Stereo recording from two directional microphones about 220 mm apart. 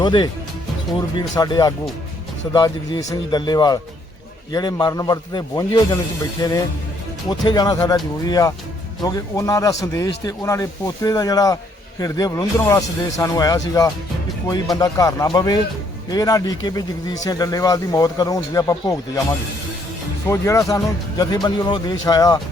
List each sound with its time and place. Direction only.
0.0 s speech: 20° left (ahead or behind)
1.4 s a man's voice: 20° left (ahead or behind)
14.8 s a man's voice: 15° left (ahead or behind)
20.2 s a man's voice: 15° left (ahead or behind)